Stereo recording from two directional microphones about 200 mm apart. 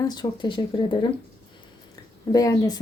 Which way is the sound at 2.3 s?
15° left (ahead or behind).